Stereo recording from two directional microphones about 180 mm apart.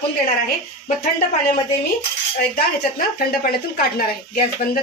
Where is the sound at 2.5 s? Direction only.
55° left (ahead or behind).